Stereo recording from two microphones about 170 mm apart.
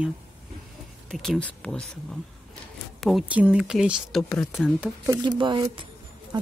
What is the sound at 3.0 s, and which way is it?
Speech, centre (ahead or behind).